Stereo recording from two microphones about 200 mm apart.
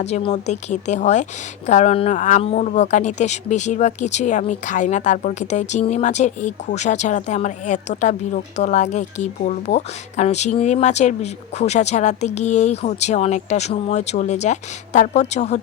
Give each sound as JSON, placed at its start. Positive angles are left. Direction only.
{"t": 0.0, "sound": "a woman's voice", "side_deg": 35}